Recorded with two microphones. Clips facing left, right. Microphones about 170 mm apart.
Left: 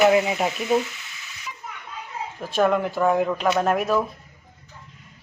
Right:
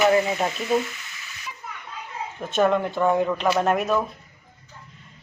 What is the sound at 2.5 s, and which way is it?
Speech, centre (ahead or behind).